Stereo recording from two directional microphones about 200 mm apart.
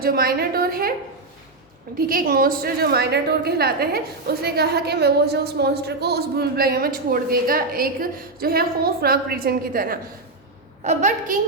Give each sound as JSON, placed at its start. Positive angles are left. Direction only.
{"t": 0.0, "sound": "a woman's voice", "side_deg": -50}
{"t": 2.0, "sound": "a woman's voice", "side_deg": -45}